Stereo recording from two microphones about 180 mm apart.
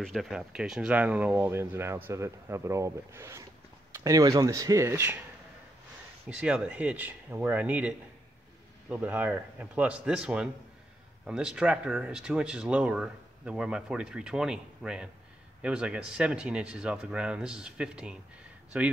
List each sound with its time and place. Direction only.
0.0 s speech: centre (ahead or behind)
6.2 s speech: 5° right (ahead or behind)